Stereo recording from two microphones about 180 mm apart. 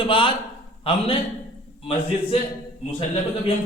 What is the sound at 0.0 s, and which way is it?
A man's voice, 30° left (ahead or behind).